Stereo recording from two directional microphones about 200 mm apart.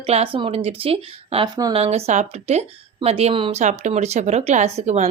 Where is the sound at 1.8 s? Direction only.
35° right (ahead or behind).